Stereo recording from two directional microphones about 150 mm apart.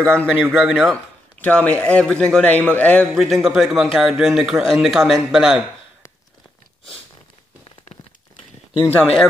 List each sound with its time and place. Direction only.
0.0 s a man's voice: 5° left (ahead or behind)
3.1 s a man's voice: centre (ahead or behind)
8.8 s a man's voice: 5° left (ahead or behind)